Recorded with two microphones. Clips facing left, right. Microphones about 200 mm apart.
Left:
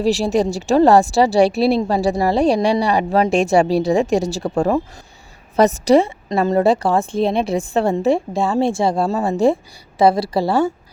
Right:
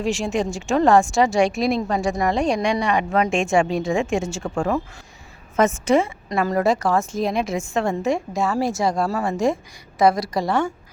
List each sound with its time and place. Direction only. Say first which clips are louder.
0.0 s speech: left 6 dB; 35° left (ahead or behind)
6.2 s speech: left 4 dB; 25° left (ahead or behind)